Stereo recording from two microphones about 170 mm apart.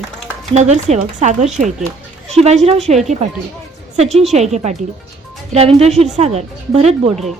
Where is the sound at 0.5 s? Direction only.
40° right (ahead or behind).